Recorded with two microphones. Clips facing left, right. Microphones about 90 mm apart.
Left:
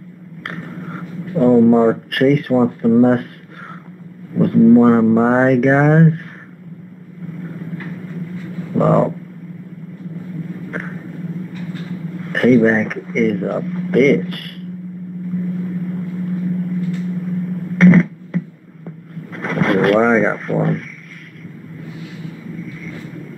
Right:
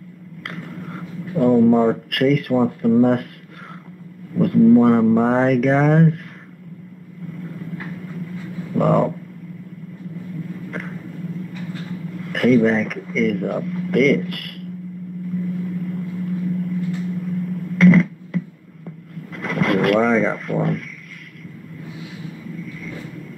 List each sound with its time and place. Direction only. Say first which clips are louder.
0.4 s speech: left 3 dB; 35° left (ahead or behind)
4.4 s speech: left 3 dB; 35° left (ahead or behind)
8.7 s speech: left 3 dB; 35° left (ahead or behind)
10.7 s a sound: left 4 dB; 35° left (ahead or behind)
12.2 s speech: left 3 dB; 35° left (ahead or behind)
15.6 s vehicle: left 2 dB; 35° left (ahead or behind)
17.3 s microwave oven: left 2 dB; 35° left (ahead or behind)
19.3 s a sound: left 3 dB; 35° left (ahead or behind)